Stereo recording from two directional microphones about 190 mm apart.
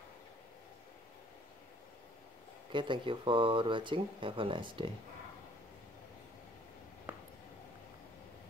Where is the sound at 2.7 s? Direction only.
25° right (ahead or behind).